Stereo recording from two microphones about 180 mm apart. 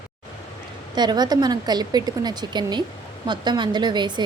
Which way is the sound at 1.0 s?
25° right (ahead or behind).